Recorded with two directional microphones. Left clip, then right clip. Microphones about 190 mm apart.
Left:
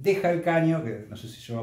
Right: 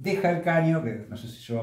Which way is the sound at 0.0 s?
25° left (ahead or behind).